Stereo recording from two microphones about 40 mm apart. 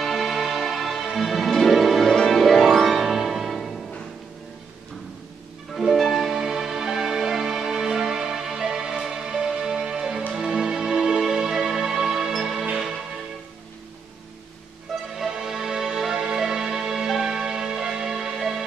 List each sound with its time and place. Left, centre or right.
0.0 s music: centre
5.7 s music: centre
15.1 s music: centre